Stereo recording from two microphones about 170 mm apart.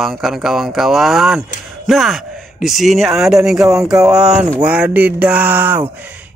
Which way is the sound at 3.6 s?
20° right (ahead or behind).